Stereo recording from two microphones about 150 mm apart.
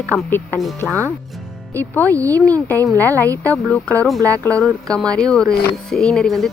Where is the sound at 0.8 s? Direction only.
Centre (ahead or behind).